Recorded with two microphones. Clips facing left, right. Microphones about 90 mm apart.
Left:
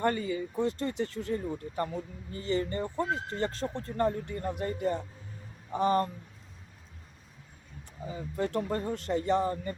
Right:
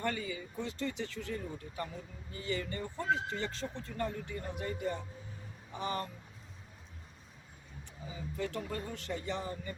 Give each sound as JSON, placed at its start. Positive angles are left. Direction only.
{"t": 0.0, "sound": "speech", "side_deg": 40}
{"t": 8.0, "sound": "speech", "side_deg": 45}